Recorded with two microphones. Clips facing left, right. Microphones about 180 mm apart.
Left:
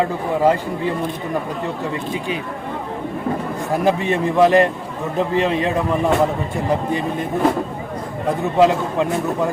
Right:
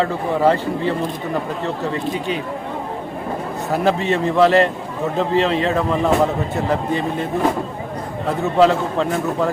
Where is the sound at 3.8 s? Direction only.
15° left (ahead or behind).